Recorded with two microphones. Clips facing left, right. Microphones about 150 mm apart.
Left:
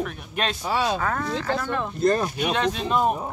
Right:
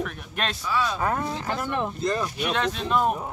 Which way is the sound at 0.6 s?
90° left.